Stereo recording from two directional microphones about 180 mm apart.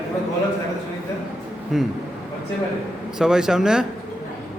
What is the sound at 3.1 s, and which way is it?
Speech, 5° right (ahead or behind).